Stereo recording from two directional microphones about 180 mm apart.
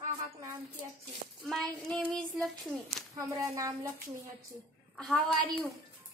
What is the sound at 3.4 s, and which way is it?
Speech, 15° right (ahead or behind).